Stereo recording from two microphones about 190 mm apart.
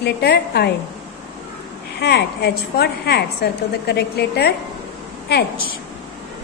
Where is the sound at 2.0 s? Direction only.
60° left (ahead or behind).